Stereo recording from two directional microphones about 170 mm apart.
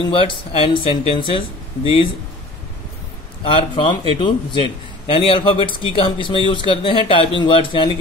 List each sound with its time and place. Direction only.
0.1 s speech: 30° left (ahead or behind)
3.4 s a man's voice: 30° left (ahead or behind)